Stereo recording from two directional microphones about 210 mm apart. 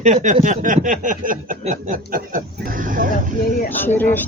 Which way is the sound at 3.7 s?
10° left (ahead or behind).